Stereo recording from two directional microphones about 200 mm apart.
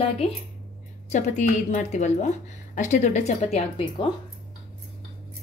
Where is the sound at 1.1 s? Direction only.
35° left (ahead or behind).